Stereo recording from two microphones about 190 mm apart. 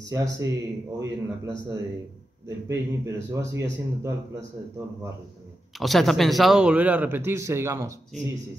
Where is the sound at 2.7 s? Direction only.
15° right (ahead or behind).